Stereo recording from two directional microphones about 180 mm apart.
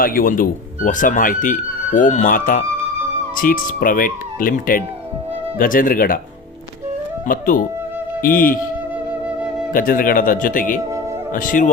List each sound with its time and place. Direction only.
0.0 s speech: 50° left (ahead or behind)
7.3 s speech: 50° left (ahead or behind)
9.7 s speech: 50° left (ahead or behind)